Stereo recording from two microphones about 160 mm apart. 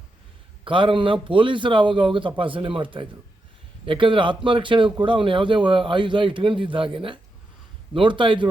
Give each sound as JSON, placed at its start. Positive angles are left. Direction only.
{"t": 0.6, "sound": "speech", "side_deg": -30}